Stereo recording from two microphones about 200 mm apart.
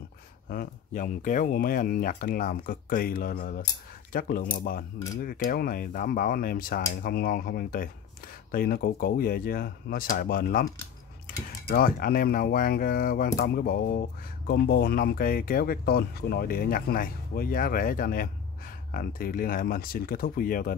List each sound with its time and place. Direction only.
0.5 s speech: 45° left (ahead or behind)
11.7 s speech: 45° left (ahead or behind)